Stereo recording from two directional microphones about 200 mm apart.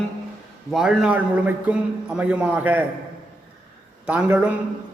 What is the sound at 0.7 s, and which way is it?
A man's voice, centre (ahead or behind).